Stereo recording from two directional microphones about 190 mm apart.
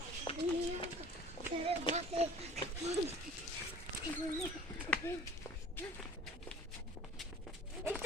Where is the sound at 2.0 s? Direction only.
35° right (ahead or behind).